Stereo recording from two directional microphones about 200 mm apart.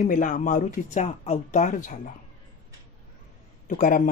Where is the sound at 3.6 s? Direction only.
40° left (ahead or behind).